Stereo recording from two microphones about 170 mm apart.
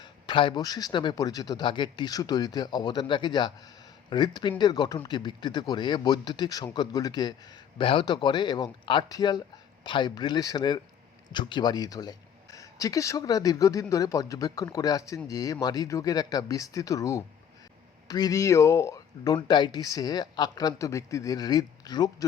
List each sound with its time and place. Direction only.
0.0 s speech: 30° left (ahead or behind)